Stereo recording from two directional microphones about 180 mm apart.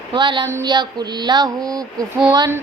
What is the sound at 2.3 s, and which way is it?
Child singing, 15° right (ahead or behind).